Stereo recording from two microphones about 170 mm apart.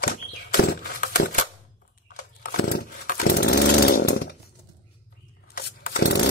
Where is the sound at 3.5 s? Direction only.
75° left (ahead or behind).